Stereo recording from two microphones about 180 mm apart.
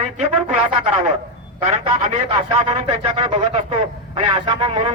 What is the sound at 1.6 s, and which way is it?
A man's voice, 35° right (ahead or behind).